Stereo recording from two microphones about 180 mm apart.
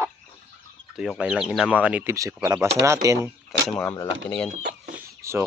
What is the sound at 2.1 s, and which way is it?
Speech, 20° right (ahead or behind).